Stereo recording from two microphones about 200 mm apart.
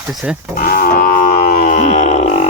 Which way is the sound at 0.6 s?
45° left (ahead or behind).